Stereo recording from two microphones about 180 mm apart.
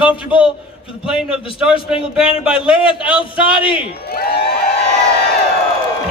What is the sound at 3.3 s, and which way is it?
Speech, 30° left (ahead or behind).